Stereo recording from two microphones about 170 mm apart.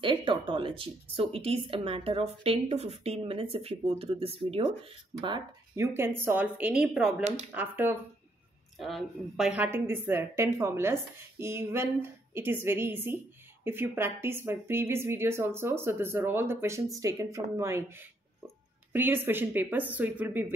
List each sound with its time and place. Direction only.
0.0 s speech: 30° right (ahead or behind)
5.8 s a woman's voice: 15° right (ahead or behind)
8.7 s a woman's voice: centre (ahead or behind)